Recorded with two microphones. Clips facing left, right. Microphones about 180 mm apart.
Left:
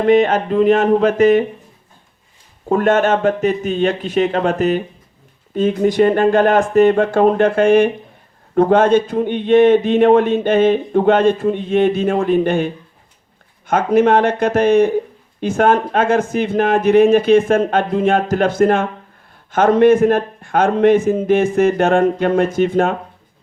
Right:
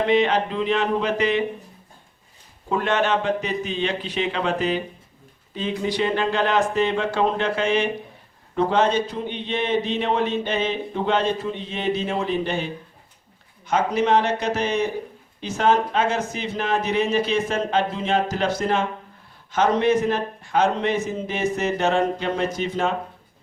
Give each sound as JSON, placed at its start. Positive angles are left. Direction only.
{"t": 0.0, "sound": "a man's voice", "side_deg": 50}
{"t": 2.6, "sound": "a man's voice", "side_deg": 45}